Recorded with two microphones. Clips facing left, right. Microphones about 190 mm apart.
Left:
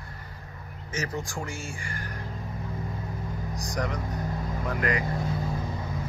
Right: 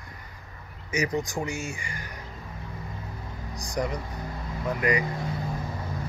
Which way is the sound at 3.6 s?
10° right (ahead or behind).